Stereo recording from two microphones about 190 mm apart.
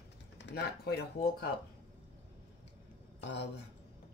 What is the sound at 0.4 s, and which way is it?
Speech, 60° left (ahead or behind).